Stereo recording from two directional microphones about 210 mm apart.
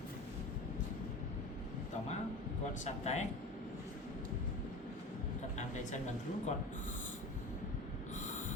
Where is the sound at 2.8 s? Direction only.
30° left (ahead or behind).